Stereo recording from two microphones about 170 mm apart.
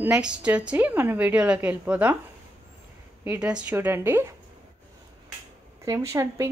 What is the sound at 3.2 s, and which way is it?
Speech, 10° right (ahead or behind).